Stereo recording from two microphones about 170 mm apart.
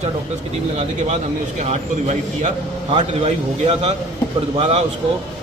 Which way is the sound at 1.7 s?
40° right (ahead or behind).